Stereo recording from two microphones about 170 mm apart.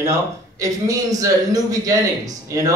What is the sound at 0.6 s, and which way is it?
Speech, 20° right (ahead or behind).